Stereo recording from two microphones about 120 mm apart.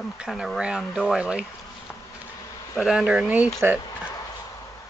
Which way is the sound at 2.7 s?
10° right (ahead or behind).